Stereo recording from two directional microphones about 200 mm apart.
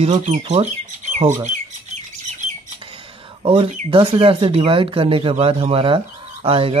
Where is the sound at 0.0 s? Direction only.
30° right (ahead or behind).